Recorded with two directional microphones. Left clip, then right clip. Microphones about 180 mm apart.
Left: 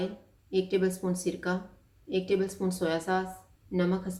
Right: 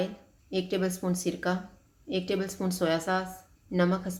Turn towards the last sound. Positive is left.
turn(degrees=-45)  # may be behind; listen again after turning